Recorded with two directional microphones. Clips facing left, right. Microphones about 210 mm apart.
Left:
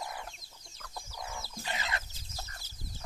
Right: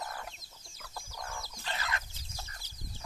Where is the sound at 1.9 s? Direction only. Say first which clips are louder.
Left 1 dB; 35° left (ahead or behind).